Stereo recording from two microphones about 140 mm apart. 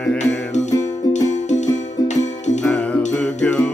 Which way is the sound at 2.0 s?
55° left (ahead or behind).